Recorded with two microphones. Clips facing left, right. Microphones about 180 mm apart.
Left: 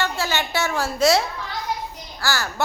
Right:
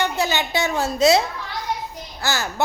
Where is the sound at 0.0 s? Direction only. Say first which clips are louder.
Right 2 dB; 20° right (ahead or behind).